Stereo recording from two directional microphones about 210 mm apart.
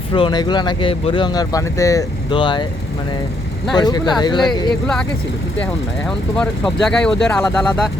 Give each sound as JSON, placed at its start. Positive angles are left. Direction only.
{"t": 0.1, "sound": "speech", "side_deg": 20}
{"t": 3.8, "sound": "speech", "side_deg": 20}
{"t": 6.1, "sound": "speech", "side_deg": 5}